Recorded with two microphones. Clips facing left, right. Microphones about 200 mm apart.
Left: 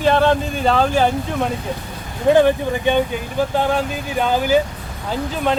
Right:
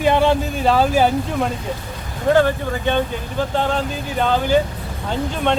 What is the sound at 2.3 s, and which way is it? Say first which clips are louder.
Speech: left 2 dB; 15° left (ahead or behind).